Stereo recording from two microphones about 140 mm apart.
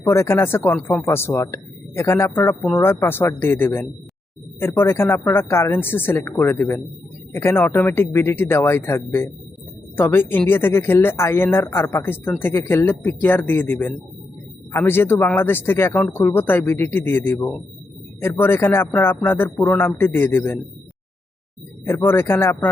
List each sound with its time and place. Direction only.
0.0 s speech: 20° left (ahead or behind)
21.8 s speech: 15° left (ahead or behind)